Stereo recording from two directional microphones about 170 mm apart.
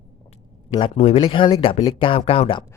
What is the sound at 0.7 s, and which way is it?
Speech, 30° left (ahead or behind).